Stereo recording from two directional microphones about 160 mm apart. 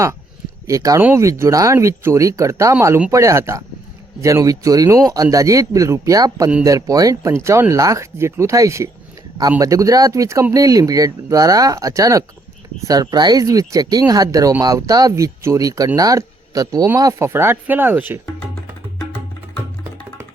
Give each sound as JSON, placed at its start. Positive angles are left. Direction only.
{"t": 0.7, "sound": "speech", "side_deg": -20}